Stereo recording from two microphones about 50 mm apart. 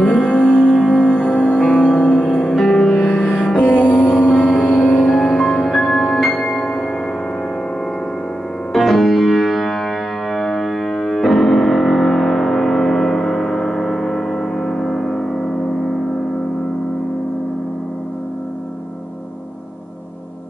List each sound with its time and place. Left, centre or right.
0.0 s music: centre
4.8 s music: centre
8.7 s music: centre